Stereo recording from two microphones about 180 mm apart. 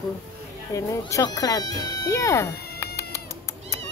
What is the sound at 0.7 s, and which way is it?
Speech, 15° left (ahead or behind).